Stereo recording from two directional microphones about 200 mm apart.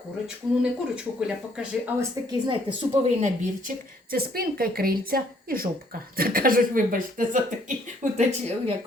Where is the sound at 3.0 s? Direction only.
40° right (ahead or behind).